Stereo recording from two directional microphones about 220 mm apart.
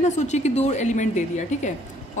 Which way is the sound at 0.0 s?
30° left (ahead or behind).